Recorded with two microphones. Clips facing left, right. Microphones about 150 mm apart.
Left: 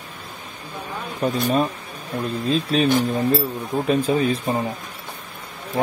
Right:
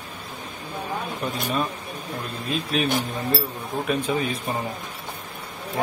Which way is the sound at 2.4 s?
30° left (ahead or behind).